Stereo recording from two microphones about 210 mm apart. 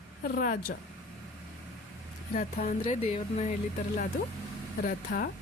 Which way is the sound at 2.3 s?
35° left (ahead or behind).